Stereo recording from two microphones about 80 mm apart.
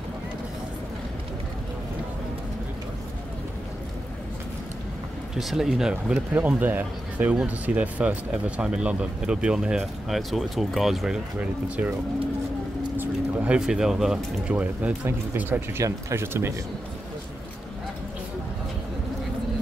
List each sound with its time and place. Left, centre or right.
5.3 s speech: centre
6.3 s speech: right; by 11.1 s centre
11.3 s speech: centre
12.9 s a sound: right
13.5 s speech: centre
14.5 s speech: centre
15.8 s speech: right